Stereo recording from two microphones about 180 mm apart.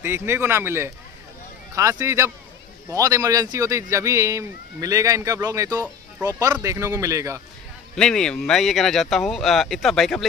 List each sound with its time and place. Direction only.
0.0 s a man's voice: 15° right (ahead or behind)
7.9 s speech: 5° left (ahead or behind)